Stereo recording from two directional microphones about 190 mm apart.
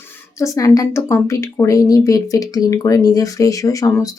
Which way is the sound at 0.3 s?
15° left (ahead or behind).